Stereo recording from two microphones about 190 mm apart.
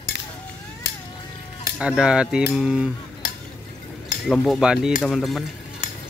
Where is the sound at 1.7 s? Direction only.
5° right (ahead or behind).